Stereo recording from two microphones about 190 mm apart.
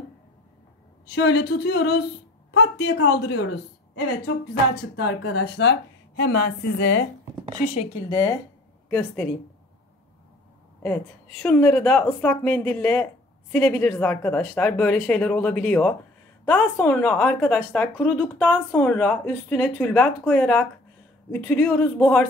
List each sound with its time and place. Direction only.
1.0 s a woman's voice: 60° left (ahead or behind)
4.7 s a woman's voice: 65° left (ahead or behind)
8.1 s speech: 15° left (ahead or behind)
11.4 s speech: 5° left (ahead or behind)